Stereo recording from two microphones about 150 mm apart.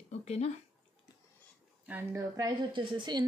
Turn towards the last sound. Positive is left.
turn(degrees=-30)  # may be behind; listen again after turning